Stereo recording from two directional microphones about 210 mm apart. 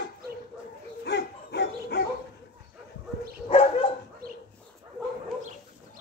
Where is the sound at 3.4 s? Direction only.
25° left (ahead or behind).